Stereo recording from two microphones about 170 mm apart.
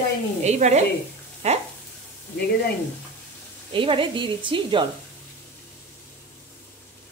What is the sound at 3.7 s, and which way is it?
A woman's voice, 30° right (ahead or behind).